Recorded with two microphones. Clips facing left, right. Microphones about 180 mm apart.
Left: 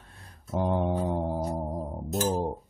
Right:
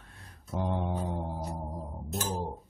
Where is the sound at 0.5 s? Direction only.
50° left (ahead or behind).